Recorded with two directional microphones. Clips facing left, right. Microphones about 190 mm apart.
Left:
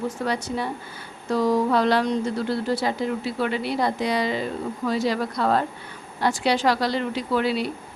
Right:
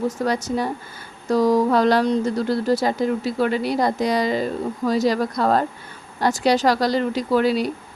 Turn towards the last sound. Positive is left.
turn(degrees=-40)  # may be behind; listen again after turning